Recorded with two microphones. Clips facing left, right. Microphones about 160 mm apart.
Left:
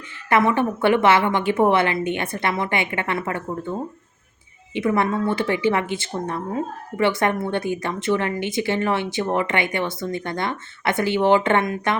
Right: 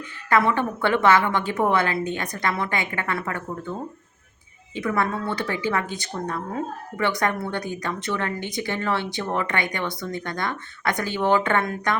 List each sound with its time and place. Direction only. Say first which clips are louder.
0.3 s a woman's voice: left 2 dB; 20° left (ahead or behind)